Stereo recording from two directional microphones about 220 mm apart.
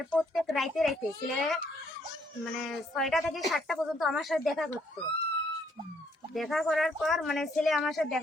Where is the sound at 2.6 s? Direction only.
Centre (ahead or behind).